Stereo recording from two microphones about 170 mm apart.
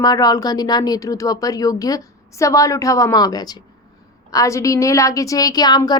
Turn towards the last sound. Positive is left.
turn(degrees=25)  # may be behind; listen again after turning